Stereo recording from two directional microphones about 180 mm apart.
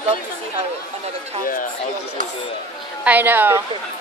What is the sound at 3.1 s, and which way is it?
Speech, 10° right (ahead or behind).